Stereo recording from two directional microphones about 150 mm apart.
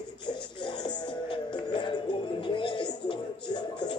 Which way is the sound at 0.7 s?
30° left (ahead or behind).